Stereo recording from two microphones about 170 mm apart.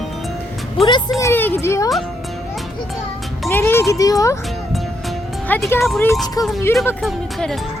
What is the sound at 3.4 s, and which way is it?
Speech, 15° left (ahead or behind).